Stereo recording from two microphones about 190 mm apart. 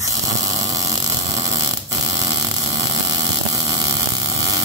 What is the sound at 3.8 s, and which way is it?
Vehicle, 20° right (ahead or behind).